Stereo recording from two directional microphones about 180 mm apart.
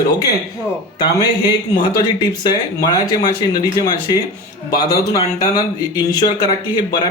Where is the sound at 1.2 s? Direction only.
20° left (ahead or behind).